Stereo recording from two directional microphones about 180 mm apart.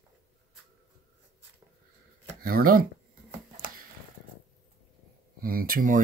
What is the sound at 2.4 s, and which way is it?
Speech, 55° right (ahead or behind).